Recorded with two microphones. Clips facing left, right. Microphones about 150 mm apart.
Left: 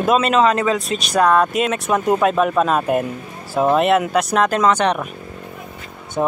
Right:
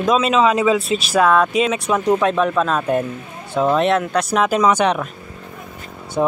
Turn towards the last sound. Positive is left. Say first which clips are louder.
# right 1 dB
turn(degrees=-5)  # may be behind; listen again after turning